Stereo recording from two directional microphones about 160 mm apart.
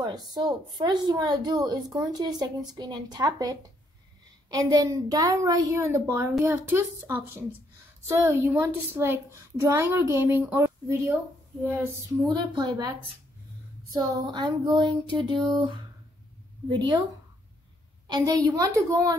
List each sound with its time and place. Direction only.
0.0 s a woman's voice: 25° right (ahead or behind)
13.9 s a woman's voice: 25° right (ahead or behind)
18.0 s a woman's voice: 25° right (ahead or behind)